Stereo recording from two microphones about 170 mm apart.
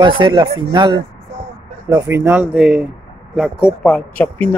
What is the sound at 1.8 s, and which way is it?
Speech, 15° right (ahead or behind).